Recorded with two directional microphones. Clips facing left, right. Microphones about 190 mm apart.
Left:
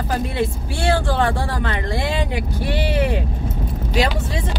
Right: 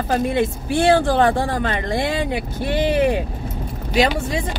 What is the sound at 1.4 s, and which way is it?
Speech, 50° right (ahead or behind).